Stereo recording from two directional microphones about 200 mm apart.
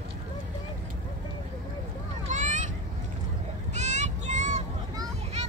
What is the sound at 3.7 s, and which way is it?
Child singing, 35° right (ahead or behind).